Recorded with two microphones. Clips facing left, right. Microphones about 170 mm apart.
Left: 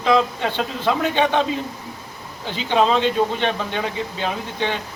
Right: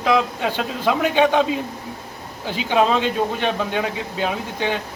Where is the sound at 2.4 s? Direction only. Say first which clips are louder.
Even; 10° right (ahead or behind).